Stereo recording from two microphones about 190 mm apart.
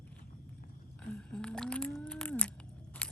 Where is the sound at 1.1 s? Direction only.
5° left (ahead or behind).